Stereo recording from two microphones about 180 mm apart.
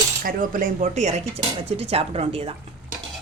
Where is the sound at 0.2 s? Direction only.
50° right (ahead or behind).